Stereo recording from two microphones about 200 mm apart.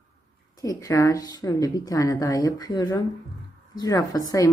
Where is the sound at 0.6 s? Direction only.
15° left (ahead or behind).